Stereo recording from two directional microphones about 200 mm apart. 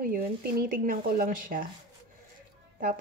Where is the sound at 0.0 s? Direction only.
45° right (ahead or behind).